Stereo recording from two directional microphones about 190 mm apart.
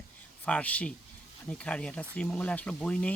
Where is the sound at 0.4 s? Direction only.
5° left (ahead or behind).